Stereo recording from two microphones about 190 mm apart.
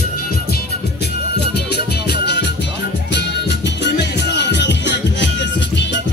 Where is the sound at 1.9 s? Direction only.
60° left (ahead or behind).